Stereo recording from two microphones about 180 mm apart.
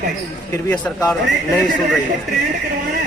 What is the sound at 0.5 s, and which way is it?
Speech, 5° left (ahead or behind).